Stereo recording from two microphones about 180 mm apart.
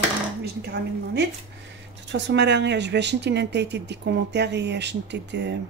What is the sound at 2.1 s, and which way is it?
Speech, 80° right.